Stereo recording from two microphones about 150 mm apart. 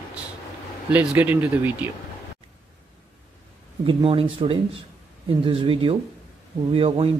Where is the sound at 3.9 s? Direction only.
35° right (ahead or behind).